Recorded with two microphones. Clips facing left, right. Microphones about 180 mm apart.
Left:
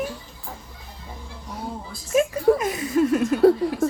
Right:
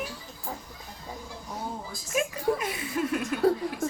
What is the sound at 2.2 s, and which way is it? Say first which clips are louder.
Speech: left 9 dB; 40° left (ahead or behind).